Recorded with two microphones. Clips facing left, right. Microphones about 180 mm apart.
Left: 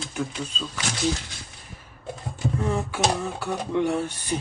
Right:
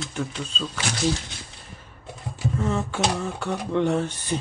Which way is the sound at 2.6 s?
15° left (ahead or behind).